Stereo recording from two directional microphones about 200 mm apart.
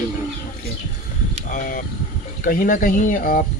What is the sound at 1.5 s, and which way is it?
Speech, 40° left (ahead or behind).